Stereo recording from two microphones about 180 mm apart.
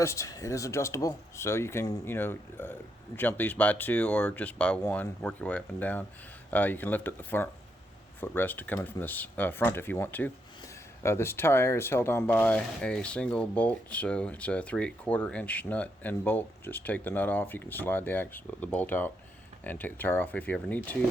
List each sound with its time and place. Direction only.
0.0 s speech: 15° left (ahead or behind)